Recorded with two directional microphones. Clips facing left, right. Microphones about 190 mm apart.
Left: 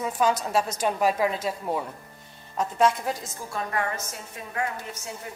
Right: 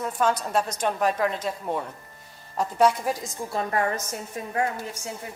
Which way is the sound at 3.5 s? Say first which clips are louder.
Right 3 dB; 35° right (ahead or behind).